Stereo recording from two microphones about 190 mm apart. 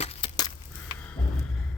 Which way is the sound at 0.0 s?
30° left (ahead or behind).